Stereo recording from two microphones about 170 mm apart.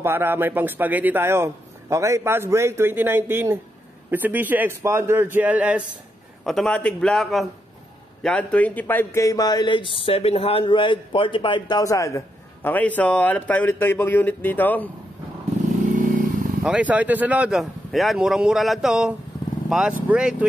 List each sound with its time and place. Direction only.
0.0 s a man's voice: 10° right (ahead or behind)
6.4 s a man's voice: centre (ahead or behind)
16.0 s vehicle: 50° right (ahead or behind)
16.6 s speech: 10° right (ahead or behind)